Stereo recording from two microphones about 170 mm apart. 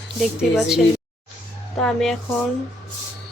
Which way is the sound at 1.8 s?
Centre (ahead or behind).